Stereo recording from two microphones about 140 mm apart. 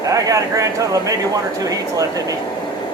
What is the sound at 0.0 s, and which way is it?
Speech, 25° right (ahead or behind).